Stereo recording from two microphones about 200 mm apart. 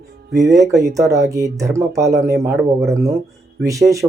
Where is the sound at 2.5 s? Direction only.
Centre (ahead or behind).